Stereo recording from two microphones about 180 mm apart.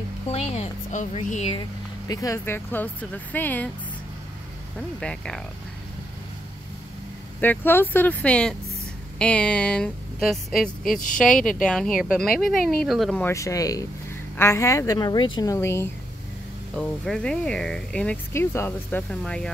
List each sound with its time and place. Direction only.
0.3 s speech: 35° left (ahead or behind)
1.6 s speech: 20° left (ahead or behind)
4.7 s speech: 5° left (ahead or behind)
7.3 s speech: 10° left (ahead or behind)
13.2 s speech: 15° left (ahead or behind)
16.7 s speech: 5° left (ahead or behind)